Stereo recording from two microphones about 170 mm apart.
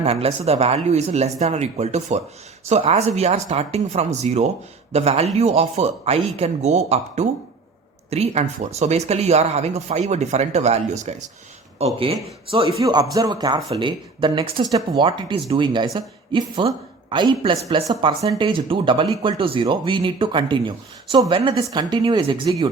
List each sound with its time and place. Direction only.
0.0 s speech: 35° right (ahead or behind)
12.8 s speech: 20° right (ahead or behind)